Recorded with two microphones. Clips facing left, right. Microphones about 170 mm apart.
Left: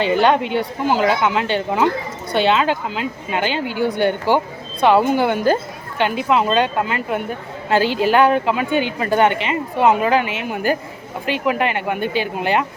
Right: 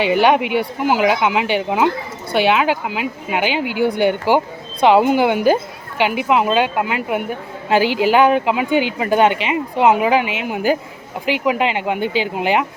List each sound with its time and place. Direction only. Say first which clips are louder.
0.0 s speech: right 1 dB; 10° right (ahead or behind)